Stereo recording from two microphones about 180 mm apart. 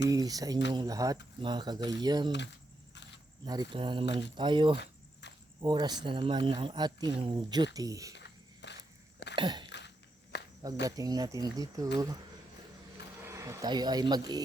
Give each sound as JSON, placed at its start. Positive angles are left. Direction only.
{"t": 0.1, "sound": "speech", "side_deg": -20}
{"t": 3.4, "sound": "speech", "side_deg": -20}
{"t": 5.2, "sound": "cricket", "side_deg": 75}
{"t": 5.5, "sound": "speech", "side_deg": -25}
{"t": 8.1, "sound": "a sound", "side_deg": 75}
{"t": 9.3, "sound": "a sound", "side_deg": -25}
{"t": 9.6, "sound": "a sound", "side_deg": 75}
{"t": 10.8, "sound": "speech", "side_deg": -20}
{"t": 13.2, "sound": "speech", "side_deg": -15}